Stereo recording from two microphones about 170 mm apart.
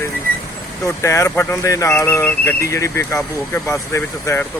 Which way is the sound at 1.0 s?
15° left (ahead or behind).